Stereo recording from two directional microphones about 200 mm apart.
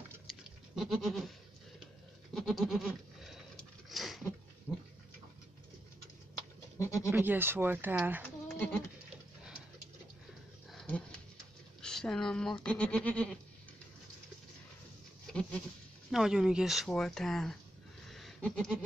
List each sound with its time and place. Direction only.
0.3 s goat: centre (ahead or behind)
2.3 s goat: centre (ahead or behind)
3.9 s a sound: centre (ahead or behind)
4.7 s speech: 5° right (ahead or behind)
6.8 s speech: 15° left (ahead or behind)
7.1 s speech: 10° right (ahead or behind)
8.5 s sheep: 10° left (ahead or behind)
10.7 s dog: 5° left (ahead or behind)
11.8 s a woman's voice: 5° left (ahead or behind)
16.1 s speech: centre (ahead or behind)
18.1 s goat: centre (ahead or behind)